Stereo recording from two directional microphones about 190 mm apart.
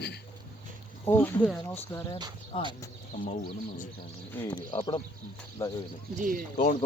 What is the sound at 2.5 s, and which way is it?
Speech, 25° left (ahead or behind).